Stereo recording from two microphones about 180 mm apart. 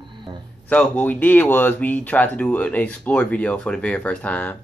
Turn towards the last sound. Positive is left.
turn(degrees=10)  # may be behind; listen again after turning